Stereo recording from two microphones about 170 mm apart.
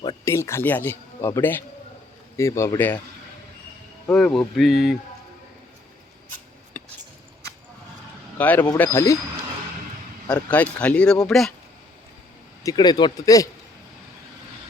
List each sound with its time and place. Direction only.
0.0 s speech: 20° left (ahead or behind)
4.0 s speech: 5° left (ahead or behind)
6.8 s squish: 10° left (ahead or behind)
8.4 s speech: 10° left (ahead or behind)
10.2 s speech: 10° left (ahead or behind)
12.6 s speech: 25° left (ahead or behind)